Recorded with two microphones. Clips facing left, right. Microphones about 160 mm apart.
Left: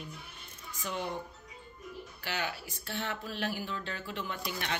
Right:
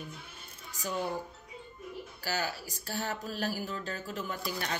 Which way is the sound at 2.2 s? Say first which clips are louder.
Right 2 dB; 40° right (ahead or behind).